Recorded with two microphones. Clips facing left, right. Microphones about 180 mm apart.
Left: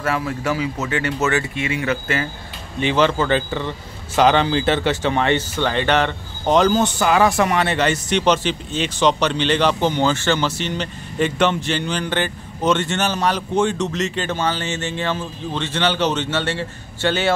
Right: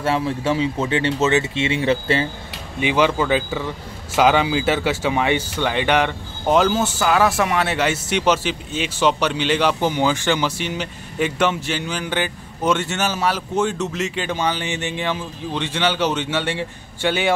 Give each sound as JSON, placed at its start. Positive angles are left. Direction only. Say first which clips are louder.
{"t": 0.0, "sound": "speech", "louder": "right 2 dB", "side_deg": -25}
{"t": 2.8, "sound": "speech", "louder": "left 1 dB", "side_deg": -10}